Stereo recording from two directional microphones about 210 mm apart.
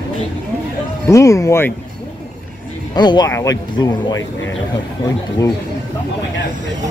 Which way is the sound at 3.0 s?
20° left (ahead or behind).